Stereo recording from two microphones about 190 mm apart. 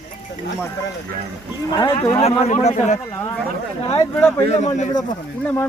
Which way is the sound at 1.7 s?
25° left (ahead or behind).